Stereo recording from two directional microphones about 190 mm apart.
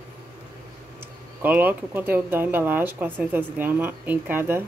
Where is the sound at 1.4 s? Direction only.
10° right (ahead or behind).